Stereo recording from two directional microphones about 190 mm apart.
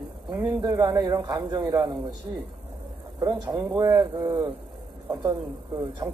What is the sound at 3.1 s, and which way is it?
A man's voice, 20° right (ahead or behind).